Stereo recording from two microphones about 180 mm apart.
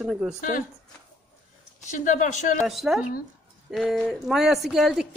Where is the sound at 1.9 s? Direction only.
45° left (ahead or behind).